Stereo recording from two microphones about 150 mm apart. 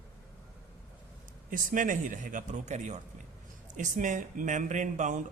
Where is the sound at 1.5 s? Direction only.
60° right (ahead or behind).